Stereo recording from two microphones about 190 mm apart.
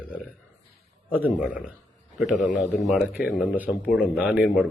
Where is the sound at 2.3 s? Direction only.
40° left (ahead or behind).